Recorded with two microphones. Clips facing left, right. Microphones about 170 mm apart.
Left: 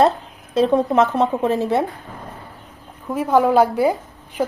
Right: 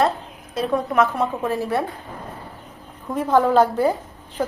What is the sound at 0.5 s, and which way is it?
A woman's voice, 25° left (ahead or behind).